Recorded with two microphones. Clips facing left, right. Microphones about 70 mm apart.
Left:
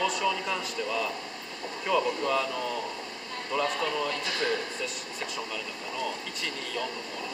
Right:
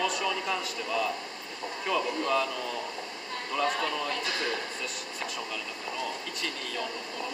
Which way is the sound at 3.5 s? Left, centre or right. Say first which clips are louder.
Even; centre.